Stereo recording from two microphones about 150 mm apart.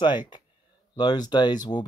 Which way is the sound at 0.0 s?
30° left (ahead or behind).